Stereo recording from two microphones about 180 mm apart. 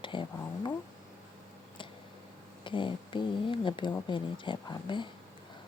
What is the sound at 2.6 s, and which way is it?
Speech, 25° left (ahead or behind).